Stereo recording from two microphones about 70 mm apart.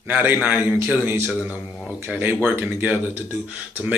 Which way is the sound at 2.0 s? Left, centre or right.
Right.